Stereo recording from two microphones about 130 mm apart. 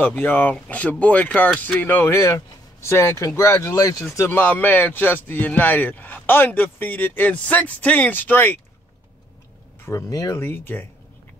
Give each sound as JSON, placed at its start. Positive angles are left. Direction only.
{"t": 0.0, "sound": "speech", "side_deg": 10}
{"t": 9.8, "sound": "speech", "side_deg": 25}